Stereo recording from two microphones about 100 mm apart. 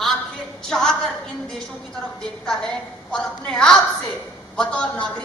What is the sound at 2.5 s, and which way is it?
A woman's voice, 5° left (ahead or behind).